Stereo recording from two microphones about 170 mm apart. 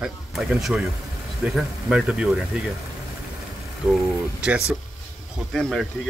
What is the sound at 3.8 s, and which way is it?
Speech, 5° right (ahead or behind).